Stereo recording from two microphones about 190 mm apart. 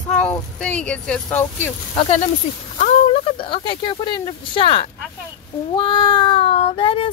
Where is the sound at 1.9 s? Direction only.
30° left (ahead or behind).